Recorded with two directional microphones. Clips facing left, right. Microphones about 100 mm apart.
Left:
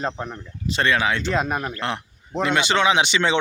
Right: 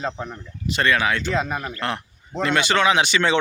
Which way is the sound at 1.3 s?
15° left (ahead or behind).